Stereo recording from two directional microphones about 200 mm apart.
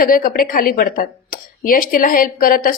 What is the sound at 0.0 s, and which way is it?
Speech, 45° left (ahead or behind).